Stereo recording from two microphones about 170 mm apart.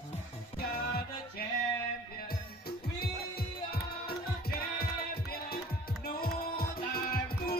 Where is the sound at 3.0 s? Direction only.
65° left (ahead or behind).